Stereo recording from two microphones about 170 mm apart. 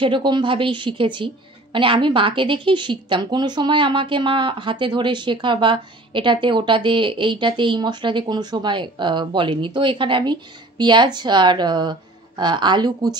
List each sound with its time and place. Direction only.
0.0 s a woman's voice: 30° right (ahead or behind)